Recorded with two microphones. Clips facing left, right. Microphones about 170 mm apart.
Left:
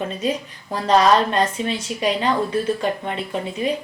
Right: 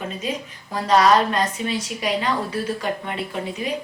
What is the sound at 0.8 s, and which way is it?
A woman's voice, 30° left (ahead or behind).